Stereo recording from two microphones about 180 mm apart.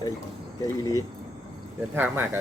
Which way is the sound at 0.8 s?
20° left (ahead or behind).